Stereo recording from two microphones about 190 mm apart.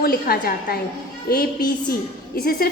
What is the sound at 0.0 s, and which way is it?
Speech, 55° left (ahead or behind).